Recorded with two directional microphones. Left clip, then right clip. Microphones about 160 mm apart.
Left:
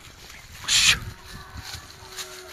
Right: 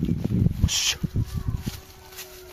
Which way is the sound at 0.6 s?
20° right (ahead or behind).